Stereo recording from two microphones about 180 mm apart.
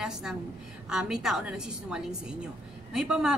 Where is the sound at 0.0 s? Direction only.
Centre (ahead or behind).